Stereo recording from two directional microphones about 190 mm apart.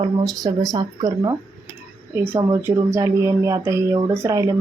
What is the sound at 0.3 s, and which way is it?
A child's voice, 20° right (ahead or behind).